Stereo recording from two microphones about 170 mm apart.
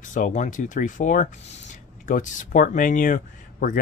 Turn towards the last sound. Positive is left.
turn(degrees=50)  # may be behind; listen again after turning